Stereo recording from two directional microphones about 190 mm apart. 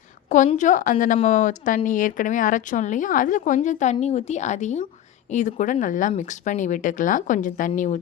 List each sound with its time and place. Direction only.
0.3 s a woman's voice: 40° left (ahead or behind)